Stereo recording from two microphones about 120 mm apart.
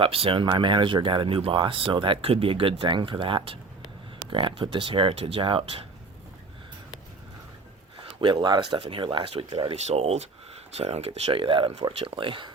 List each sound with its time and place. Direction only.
0.0 s speech: 50° right (ahead or behind)
8.2 s speech: 40° right (ahead or behind)
9.8 s speech: 60° right (ahead or behind); by 12.5 s 45° right (ahead or behind)